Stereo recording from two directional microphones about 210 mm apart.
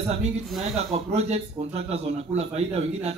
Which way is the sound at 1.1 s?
30° right (ahead or behind).